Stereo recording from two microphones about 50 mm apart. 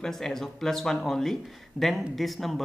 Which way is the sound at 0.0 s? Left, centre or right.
Centre.